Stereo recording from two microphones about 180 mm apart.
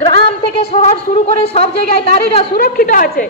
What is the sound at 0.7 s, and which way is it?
Speech, 35° left (ahead or behind).